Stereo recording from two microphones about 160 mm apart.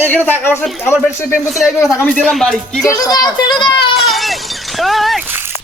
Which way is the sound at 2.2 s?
Centre (ahead or behind).